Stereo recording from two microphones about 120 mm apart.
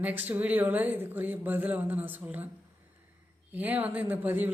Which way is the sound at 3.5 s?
15° right (ahead or behind).